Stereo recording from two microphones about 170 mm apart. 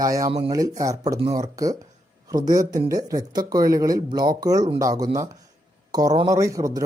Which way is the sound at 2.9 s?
20° right (ahead or behind).